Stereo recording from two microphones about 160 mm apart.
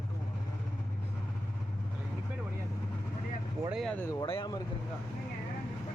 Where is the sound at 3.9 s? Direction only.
15° left (ahead or behind).